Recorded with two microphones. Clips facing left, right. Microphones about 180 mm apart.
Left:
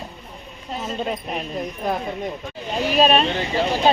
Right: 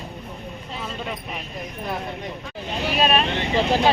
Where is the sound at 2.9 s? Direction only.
35° left (ahead or behind).